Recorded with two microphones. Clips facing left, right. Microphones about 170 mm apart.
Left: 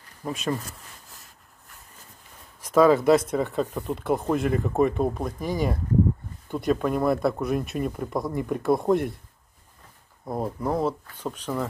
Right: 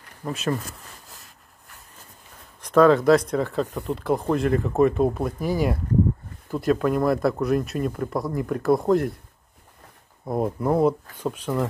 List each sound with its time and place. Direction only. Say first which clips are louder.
0.2 s speech: right 2 dB; centre (ahead or behind)
2.6 s speech: right 2 dB; 5° left (ahead or behind)
10.2 s speech: right 4 dB; 5° right (ahead or behind)